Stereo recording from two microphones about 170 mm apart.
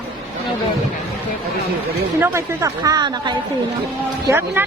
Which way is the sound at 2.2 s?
15° right (ahead or behind).